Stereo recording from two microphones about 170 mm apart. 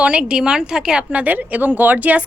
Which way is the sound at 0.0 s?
5° right (ahead or behind).